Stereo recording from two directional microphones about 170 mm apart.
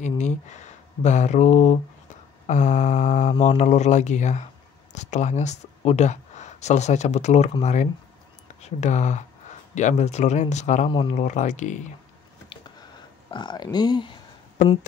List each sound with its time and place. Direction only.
0.2 s speech: 45° left (ahead or behind)
10.9 s speech: 30° left (ahead or behind)
13.3 s speech: 25° left (ahead or behind)